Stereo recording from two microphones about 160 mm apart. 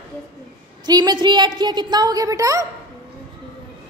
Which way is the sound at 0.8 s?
25° right (ahead or behind).